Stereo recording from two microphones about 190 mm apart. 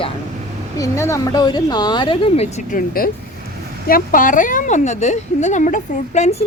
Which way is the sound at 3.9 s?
45° left (ahead or behind).